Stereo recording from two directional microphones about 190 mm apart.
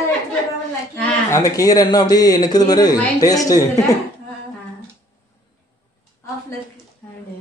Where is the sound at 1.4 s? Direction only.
20° left (ahead or behind).